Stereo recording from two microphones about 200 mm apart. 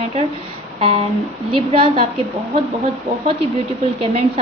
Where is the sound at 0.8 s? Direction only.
25° right (ahead or behind).